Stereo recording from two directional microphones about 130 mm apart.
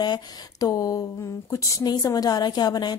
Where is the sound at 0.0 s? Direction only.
30° left (ahead or behind).